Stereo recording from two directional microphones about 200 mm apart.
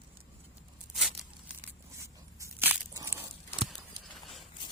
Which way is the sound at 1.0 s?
Centre (ahead or behind).